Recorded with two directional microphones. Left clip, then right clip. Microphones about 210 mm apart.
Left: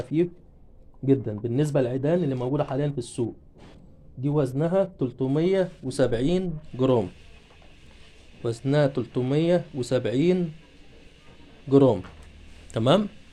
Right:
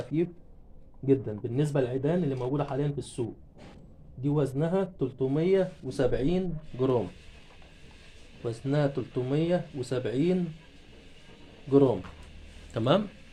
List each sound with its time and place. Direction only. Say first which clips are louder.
0.1 s speech: left 6 dB; 55° left (ahead or behind)
8.4 s speech: left 6 dB; 55° left (ahead or behind)
12.7 s speech: left 4 dB; 40° left (ahead or behind)